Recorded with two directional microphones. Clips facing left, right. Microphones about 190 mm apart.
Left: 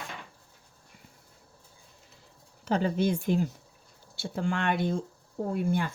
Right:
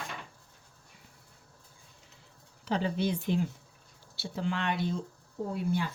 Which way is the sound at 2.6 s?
45° left (ahead or behind).